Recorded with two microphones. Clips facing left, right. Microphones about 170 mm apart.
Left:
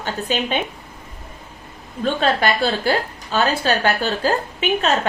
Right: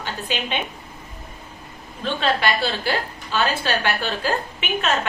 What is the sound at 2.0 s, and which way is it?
A woman's voice, 45° left (ahead or behind).